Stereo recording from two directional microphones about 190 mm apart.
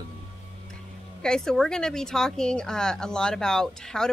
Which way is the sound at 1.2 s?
5° left (ahead or behind).